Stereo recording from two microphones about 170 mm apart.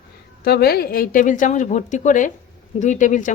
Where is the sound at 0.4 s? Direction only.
70° left (ahead or behind).